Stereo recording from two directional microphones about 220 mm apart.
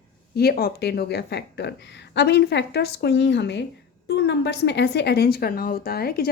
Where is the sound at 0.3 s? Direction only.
45° left (ahead or behind).